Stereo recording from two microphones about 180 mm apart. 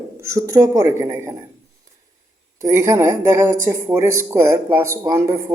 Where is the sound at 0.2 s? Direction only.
15° right (ahead or behind).